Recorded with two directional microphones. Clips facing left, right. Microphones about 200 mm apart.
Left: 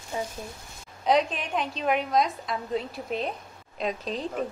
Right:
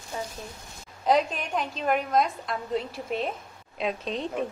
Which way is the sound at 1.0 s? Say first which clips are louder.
Even; centre (ahead or behind).